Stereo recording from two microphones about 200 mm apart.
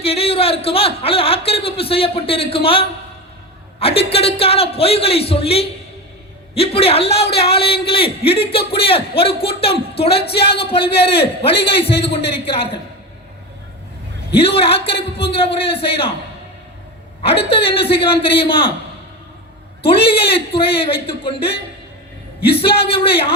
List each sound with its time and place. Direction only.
0.0 s a man's voice: 30° left (ahead or behind)
14.3 s a man's voice: 30° left (ahead or behind)
17.2 s a man's voice: 30° left (ahead or behind)
19.8 s a man's voice: 25° left (ahead or behind)
22.5 s a man's voice: 30° left (ahead or behind)